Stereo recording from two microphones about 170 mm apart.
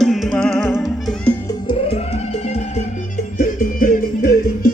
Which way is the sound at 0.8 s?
Centre (ahead or behind).